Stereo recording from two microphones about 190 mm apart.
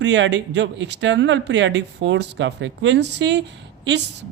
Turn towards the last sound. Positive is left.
turn(degrees=-65)  # may be behind; listen again after turning